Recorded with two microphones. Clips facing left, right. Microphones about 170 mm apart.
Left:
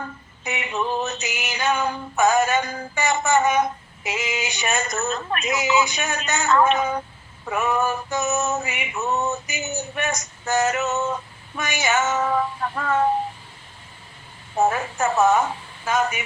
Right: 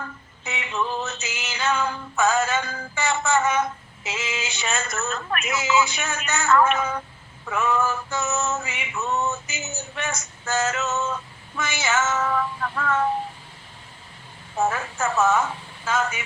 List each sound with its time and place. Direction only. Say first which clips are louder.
0.0 s music: left 3 dB; 15° left (ahead or behind)
2.1 s a sound: left 3 dB; 15° left (ahead or behind)
5.5 s male singing: left 1 dB; 15° left (ahead or behind)
12.2 s speech: left 2 dB; 30° left (ahead or behind)
14.6 s a woman's voice: left 3 dB; 20° left (ahead or behind)